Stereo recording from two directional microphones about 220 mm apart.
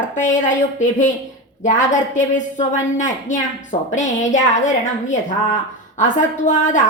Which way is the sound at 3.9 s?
35° left (ahead or behind).